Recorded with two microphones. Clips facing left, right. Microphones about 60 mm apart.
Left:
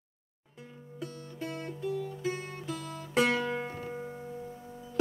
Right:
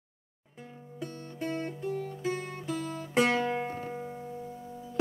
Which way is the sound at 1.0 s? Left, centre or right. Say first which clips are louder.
Right 3 dB; right.